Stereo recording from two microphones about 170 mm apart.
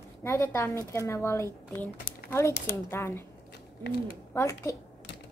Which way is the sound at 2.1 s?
60° left (ahead or behind).